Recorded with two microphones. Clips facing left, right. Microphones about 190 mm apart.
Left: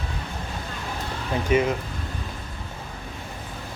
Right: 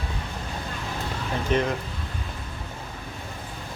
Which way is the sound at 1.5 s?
10° left (ahead or behind).